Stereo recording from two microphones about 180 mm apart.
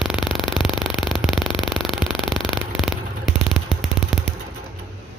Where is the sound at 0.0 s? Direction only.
Centre (ahead or behind).